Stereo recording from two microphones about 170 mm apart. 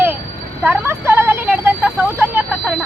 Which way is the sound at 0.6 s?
10° right (ahead or behind).